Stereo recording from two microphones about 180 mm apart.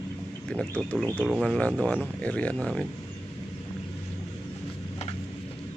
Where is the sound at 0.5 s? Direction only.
Centre (ahead or behind).